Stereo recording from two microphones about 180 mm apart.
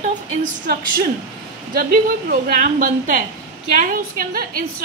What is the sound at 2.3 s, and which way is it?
A woman's voice, 50° right (ahead or behind).